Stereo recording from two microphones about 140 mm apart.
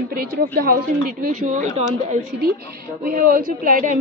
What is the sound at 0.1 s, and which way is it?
Speech, 90° right.